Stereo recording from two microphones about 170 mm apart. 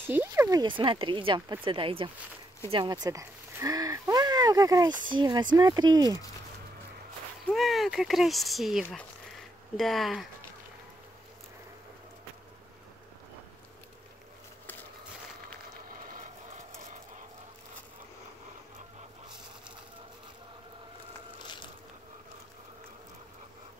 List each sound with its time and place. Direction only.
0.0 s speech: 15° right (ahead or behind)
7.4 s speech: centre (ahead or behind)